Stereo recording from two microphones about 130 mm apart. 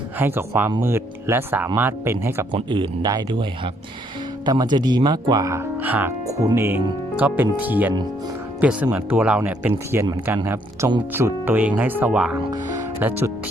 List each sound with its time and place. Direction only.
0.2 s speech: 15° right (ahead or behind)
2.5 s speech: 40° right (ahead or behind); by 6.1 s 15° right (ahead or behind)
6.2 s speech: 25° right (ahead or behind)